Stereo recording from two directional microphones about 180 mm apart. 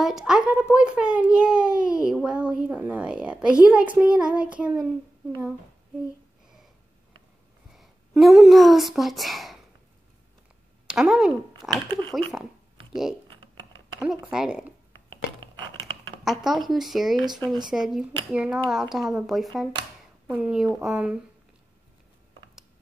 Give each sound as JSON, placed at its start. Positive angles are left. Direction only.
{"t": 0.0, "sound": "a child's voice", "side_deg": 0}
{"t": 7.7, "sound": "speech", "side_deg": 0}
{"t": 10.9, "sound": "speech", "side_deg": -5}
{"t": 11.9, "sound": "a child's voice", "side_deg": 5}
{"t": 13.9, "sound": "a child's voice", "side_deg": -5}
{"t": 15.4, "sound": "a sound", "side_deg": -25}
{"t": 16.4, "sound": "a child's voice", "side_deg": 0}